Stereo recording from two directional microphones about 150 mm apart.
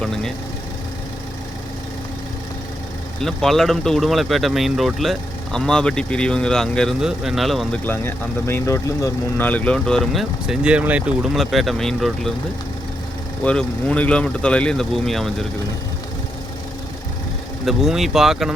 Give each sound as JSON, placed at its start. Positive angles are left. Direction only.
{"t": 3.2, "sound": "speech", "side_deg": 0}
{"t": 7.9, "sound": "speech", "side_deg": 15}
{"t": 9.5, "sound": "speech", "side_deg": 10}
{"t": 13.4, "sound": "speech", "side_deg": 5}
{"t": 17.7, "sound": "speech", "side_deg": 0}